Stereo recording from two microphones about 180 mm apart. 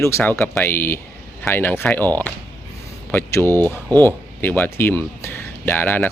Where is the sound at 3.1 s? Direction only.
10° left (ahead or behind).